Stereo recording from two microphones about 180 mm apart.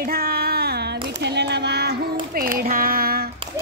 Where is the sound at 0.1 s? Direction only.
60° right (ahead or behind).